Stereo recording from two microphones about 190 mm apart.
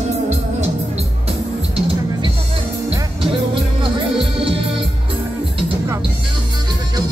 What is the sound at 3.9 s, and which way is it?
Music, 30° right (ahead or behind).